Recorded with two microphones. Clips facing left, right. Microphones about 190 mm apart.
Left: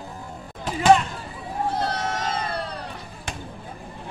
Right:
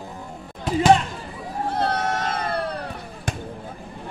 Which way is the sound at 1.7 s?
55° right (ahead or behind).